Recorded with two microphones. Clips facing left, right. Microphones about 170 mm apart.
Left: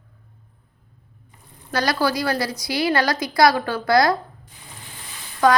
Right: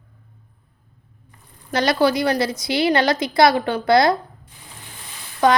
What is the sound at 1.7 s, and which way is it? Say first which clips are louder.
A woman's voice: right 4 dB; 25° right (ahead or behind).